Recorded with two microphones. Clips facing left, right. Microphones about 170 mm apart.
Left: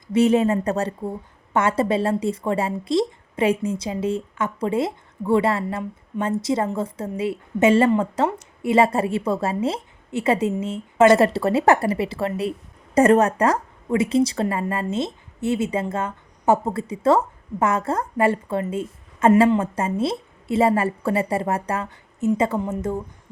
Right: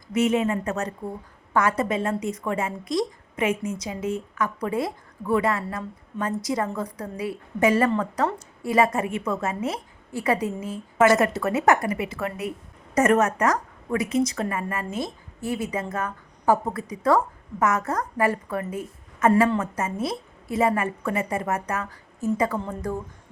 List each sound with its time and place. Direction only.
0.1 s a woman's voice: 35° left (ahead or behind)